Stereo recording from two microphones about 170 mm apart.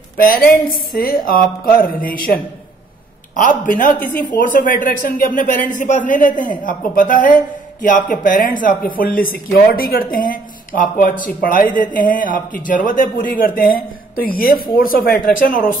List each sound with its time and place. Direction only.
0.2 s speech: 60° left (ahead or behind)